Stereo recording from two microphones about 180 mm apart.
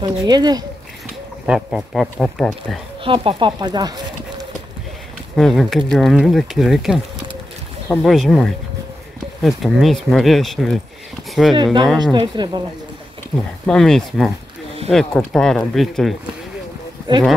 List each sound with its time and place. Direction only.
0.0 s speech: 25° right (ahead or behind)
1.4 s speech: 5° right (ahead or behind)
3.0 s speech: 30° right (ahead or behind)
5.3 s speech: centre (ahead or behind)
12.0 s speech: 25° right (ahead or behind)
13.7 s speech: centre (ahead or behind)